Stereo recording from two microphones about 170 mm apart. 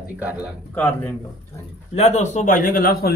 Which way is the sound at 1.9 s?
40° left (ahead or behind).